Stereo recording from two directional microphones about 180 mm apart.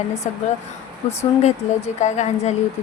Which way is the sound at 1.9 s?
40° left (ahead or behind).